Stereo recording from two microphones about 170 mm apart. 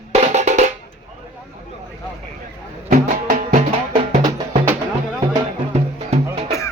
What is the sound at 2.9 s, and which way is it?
Music, 55° right (ahead or behind).